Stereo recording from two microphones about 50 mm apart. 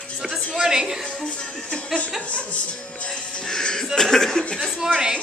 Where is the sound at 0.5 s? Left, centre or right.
Centre.